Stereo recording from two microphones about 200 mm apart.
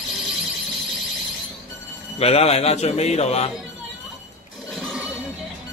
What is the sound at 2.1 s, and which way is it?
A man's voice, 30° left (ahead or behind).